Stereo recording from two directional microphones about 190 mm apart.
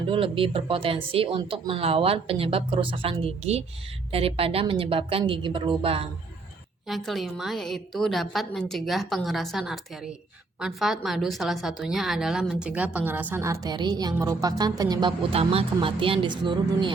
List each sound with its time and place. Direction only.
0.1 s a woman's voice: 30° right (ahead or behind)
6.8 s a woman's voice: centre (ahead or behind); by 16.9 s 25° right (ahead or behind)